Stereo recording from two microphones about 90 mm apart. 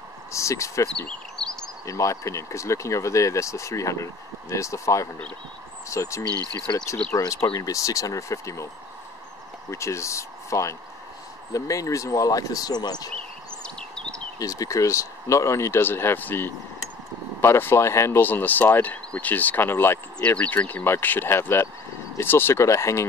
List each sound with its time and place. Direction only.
0.3 s speech: 35° left (ahead or behind)
1.0 s bird: 5° left (ahead or behind)
1.9 s speech: 35° left (ahead or behind)
6.2 s speech: 45° right (ahead or behind)
7.5 s speech: 40° left (ahead or behind)
9.7 s speech: 30° left (ahead or behind); by 13.1 s 50° left (ahead or behind)
13.1 s a sound: 10° left (ahead or behind)
14.4 s speech: 40° left (ahead or behind)